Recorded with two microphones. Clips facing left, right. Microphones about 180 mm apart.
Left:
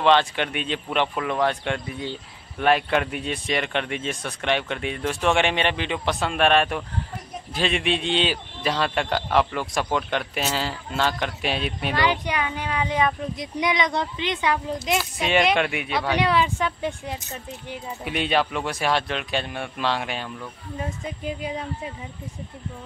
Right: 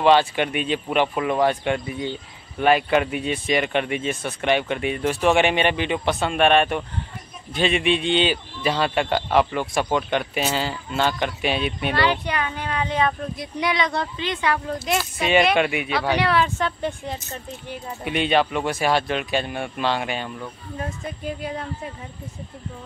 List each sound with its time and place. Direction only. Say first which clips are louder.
0.0 s a man's voice: right 2 dB; 5° right (ahead or behind)
12.0 s speech: right 1 dB; 15° left (ahead or behind)
15.1 s a man's voice: right 3 dB; centre (ahead or behind)
16.2 s speech: left 2 dB; 15° left (ahead or behind)
18.0 s a man's voice: right 3 dB; centre (ahead or behind)
20.8 s speech: even; 15° left (ahead or behind)